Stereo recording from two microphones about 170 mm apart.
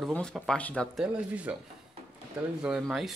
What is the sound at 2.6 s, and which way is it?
Speech, 5° right (ahead or behind).